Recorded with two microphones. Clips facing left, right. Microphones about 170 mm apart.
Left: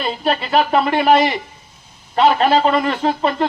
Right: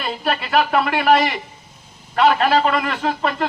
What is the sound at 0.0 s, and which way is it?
A man's voice, 25° left (ahead or behind).